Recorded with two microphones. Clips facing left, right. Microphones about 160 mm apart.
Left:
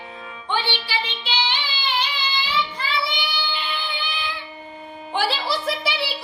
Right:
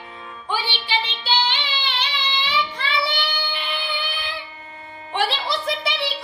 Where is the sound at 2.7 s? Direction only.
70° right (ahead or behind).